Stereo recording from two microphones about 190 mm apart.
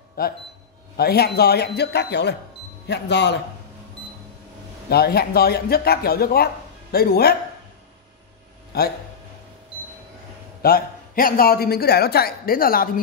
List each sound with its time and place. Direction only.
0.2 s a man's voice: 50° left (ahead or behind)
4.8 s speech: 55° left (ahead or behind)
10.6 s a man's voice: 50° left (ahead or behind)